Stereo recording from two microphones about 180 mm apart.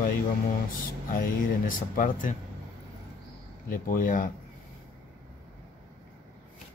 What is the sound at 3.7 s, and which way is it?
Speech, 50° left (ahead or behind).